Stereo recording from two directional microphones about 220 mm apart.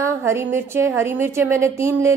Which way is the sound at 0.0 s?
10° right (ahead or behind).